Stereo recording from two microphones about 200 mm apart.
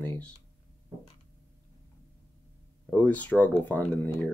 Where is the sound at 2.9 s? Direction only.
10° left (ahead or behind).